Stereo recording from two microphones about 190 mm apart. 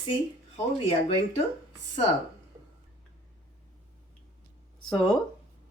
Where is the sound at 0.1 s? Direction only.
30° left (ahead or behind).